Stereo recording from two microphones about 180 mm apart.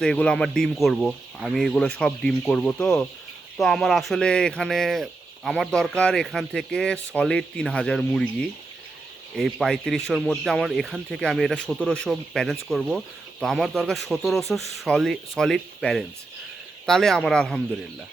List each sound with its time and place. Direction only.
0.0 s speech: 5° left (ahead or behind)